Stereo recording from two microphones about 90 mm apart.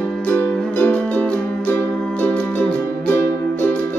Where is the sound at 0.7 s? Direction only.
15° left (ahead or behind).